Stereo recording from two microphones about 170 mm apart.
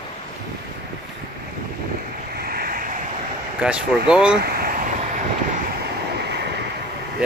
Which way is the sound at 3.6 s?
5° right (ahead or behind).